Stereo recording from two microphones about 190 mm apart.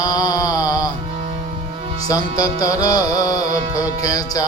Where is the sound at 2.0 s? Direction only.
20° left (ahead or behind).